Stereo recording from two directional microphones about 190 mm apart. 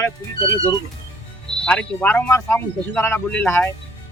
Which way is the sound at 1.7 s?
5° left (ahead or behind).